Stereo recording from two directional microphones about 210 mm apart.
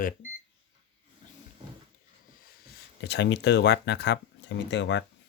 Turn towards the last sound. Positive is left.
turn(degrees=60)  # may be behind; listen again after turning